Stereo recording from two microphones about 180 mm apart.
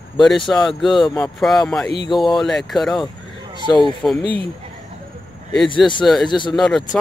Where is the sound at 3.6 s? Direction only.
25° left (ahead or behind).